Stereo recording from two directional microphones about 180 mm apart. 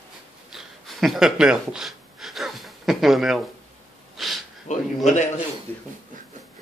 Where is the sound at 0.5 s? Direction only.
Centre (ahead or behind).